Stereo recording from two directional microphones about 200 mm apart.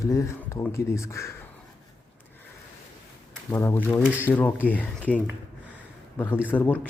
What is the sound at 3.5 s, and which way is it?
Speech, 10° left (ahead or behind).